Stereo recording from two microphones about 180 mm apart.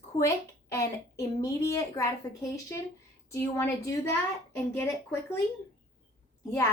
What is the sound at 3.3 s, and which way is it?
Speech, 15° left (ahead or behind).